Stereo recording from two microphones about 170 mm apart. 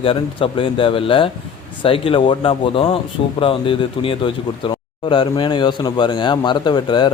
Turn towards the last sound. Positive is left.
turn(degrees=25)  # may be behind; listen again after turning